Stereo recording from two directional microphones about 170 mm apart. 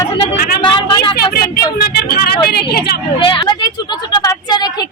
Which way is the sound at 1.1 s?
65° left (ahead or behind).